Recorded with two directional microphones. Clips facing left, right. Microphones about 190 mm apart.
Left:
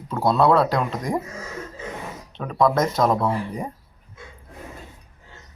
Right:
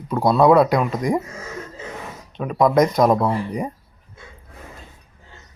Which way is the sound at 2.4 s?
15° right (ahead or behind).